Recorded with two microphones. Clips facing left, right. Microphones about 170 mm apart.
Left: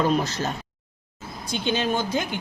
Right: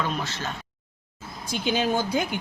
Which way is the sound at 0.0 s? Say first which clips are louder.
Left 7 dB; 40° left (ahead or behind).